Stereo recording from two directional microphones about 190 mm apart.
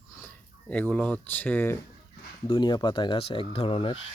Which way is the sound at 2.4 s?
25° left (ahead or behind).